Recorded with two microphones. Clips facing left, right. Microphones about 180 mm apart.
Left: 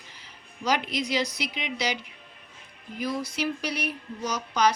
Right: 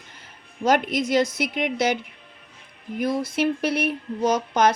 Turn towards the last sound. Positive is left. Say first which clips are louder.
# right 5 dB
turn(degrees=-55)  # may be behind; listen again after turning